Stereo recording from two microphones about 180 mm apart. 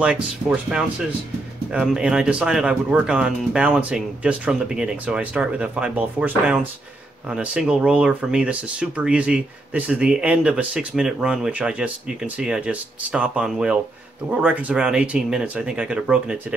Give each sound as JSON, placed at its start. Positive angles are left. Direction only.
{"t": 0.0, "sound": "speech", "side_deg": -5}